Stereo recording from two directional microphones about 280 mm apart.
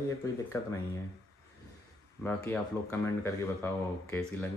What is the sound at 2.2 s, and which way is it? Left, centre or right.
Speech, centre.